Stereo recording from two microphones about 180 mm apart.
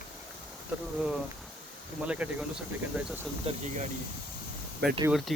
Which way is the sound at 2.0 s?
5° right (ahead or behind).